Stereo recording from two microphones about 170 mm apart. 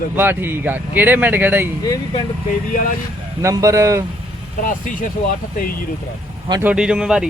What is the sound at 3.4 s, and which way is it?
Speech, 20° right (ahead or behind).